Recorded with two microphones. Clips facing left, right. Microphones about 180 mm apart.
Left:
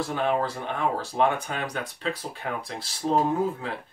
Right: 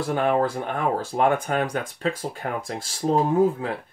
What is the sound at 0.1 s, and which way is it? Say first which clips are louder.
Speech: right 7 dB; 50° right (ahead or behind).